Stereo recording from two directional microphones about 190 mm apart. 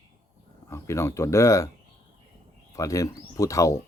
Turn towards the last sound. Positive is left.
turn(degrees=15)  # may be behind; listen again after turning